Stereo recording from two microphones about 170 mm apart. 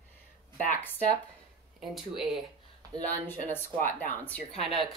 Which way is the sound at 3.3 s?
10° left (ahead or behind).